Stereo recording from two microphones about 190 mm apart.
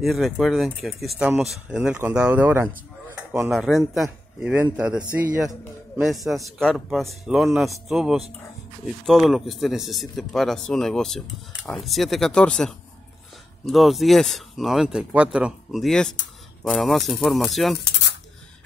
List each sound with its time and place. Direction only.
0.0 s speech: centre (ahead or behind)